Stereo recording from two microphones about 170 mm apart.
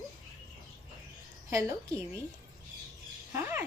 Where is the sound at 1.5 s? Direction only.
15° right (ahead or behind).